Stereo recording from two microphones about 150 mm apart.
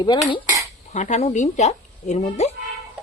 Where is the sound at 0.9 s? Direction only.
50° left (ahead or behind).